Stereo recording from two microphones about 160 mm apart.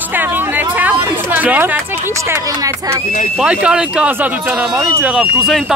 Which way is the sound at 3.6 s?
5° right (ahead or behind).